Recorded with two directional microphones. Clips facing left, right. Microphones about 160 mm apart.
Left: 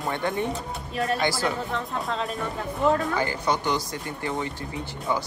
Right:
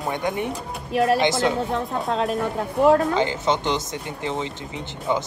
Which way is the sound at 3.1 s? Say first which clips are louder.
Right 4 dB; 20° right (ahead or behind).